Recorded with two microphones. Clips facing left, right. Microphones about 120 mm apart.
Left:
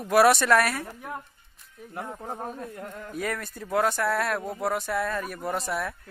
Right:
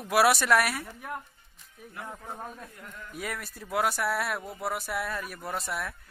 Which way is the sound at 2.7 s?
50° left (ahead or behind).